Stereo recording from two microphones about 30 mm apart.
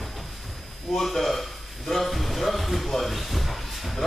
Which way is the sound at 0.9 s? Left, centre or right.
Centre.